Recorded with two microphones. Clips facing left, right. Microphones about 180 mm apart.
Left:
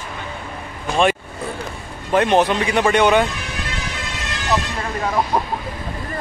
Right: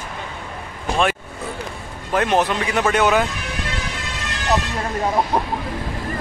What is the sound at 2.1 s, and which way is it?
A man's voice, centre (ahead or behind).